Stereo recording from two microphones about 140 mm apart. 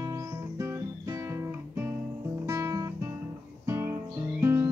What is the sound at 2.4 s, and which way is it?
Guitar, 25° right (ahead or behind).